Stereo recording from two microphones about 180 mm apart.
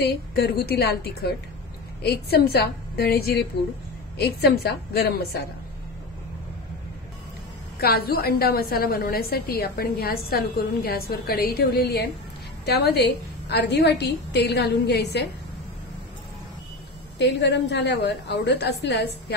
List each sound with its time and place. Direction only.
0.0 s a woman's voice: 60° left (ahead or behind)
7.8 s a woman's voice: 60° left (ahead or behind)
17.2 s a woman's voice: 70° left (ahead or behind)